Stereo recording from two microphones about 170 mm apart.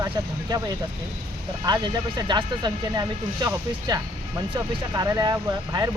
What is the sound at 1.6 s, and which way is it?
Speech, 25° right (ahead or behind).